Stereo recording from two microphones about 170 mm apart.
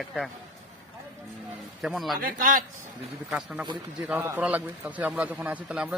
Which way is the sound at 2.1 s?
55° right (ahead or behind).